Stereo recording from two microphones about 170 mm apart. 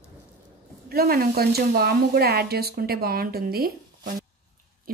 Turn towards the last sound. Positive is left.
turn(degrees=-65)  # may be behind; listen again after turning